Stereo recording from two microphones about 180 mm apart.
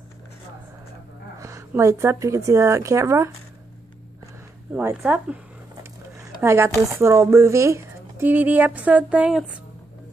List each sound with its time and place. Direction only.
1.4 s speech: 15° right (ahead or behind)
4.7 s speech: 10° right (ahead or behind)
6.1 s a sound: 15° right (ahead or behind)
6.9 s speech: 15° right (ahead or behind)